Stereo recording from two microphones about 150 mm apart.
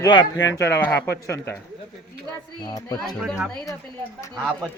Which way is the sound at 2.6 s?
25° left (ahead or behind).